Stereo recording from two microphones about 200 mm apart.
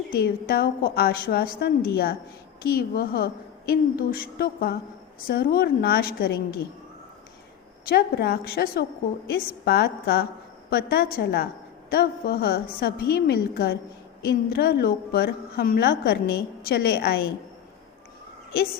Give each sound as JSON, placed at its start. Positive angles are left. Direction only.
{"t": 0.1, "sound": "a woman's voice", "side_deg": 50}
{"t": 7.9, "sound": "a woman's voice", "side_deg": 50}